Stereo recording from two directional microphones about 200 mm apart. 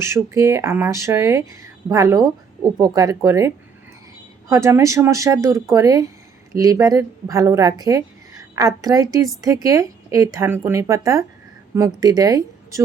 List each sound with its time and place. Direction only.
0.0 s speech: 15° right (ahead or behind)